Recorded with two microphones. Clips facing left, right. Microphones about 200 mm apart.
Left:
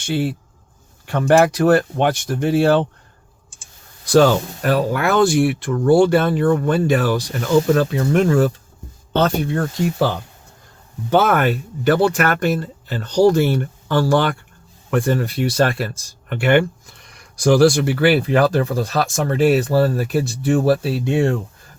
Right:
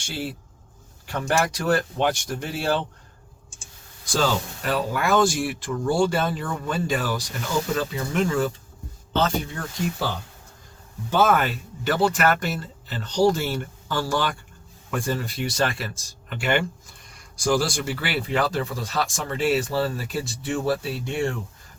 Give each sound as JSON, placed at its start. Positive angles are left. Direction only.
{"t": 1.0, "sound": "speech", "side_deg": 55}
{"t": 4.0, "sound": "speech", "side_deg": 60}
{"t": 9.1, "sound": "speech", "side_deg": 65}